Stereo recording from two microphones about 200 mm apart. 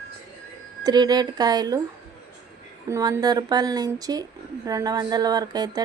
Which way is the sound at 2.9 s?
20° right (ahead or behind).